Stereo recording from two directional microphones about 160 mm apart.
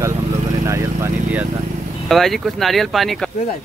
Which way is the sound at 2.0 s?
Centre (ahead or behind).